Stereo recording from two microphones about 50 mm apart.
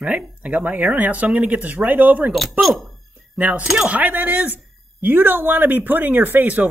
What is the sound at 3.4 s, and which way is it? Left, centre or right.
Speech, right.